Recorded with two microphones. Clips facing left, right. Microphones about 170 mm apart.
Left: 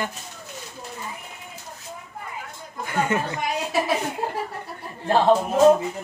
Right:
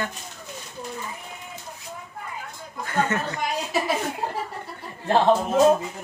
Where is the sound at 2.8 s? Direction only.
10° left (ahead or behind).